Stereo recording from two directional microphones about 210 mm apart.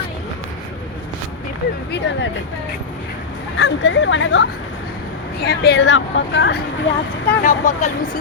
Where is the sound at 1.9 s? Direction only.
55° left (ahead or behind).